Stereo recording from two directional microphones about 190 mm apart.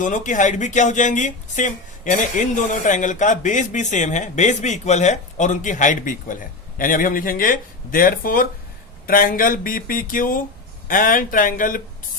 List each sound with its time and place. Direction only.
0.0 s speech: 40° left (ahead or behind)